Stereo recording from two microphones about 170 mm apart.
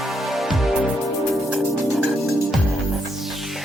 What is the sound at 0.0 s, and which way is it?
Music, centre (ahead or behind).